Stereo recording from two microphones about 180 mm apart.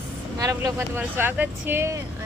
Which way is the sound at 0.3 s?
20° right (ahead or behind).